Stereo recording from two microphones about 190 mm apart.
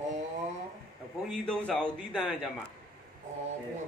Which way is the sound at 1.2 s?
5° left (ahead or behind).